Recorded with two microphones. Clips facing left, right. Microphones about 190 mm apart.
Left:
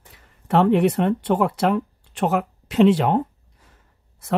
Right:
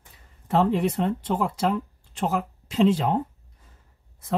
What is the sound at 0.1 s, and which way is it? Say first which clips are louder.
A woman's voice: left 4 dB; 75° left (ahead or behind).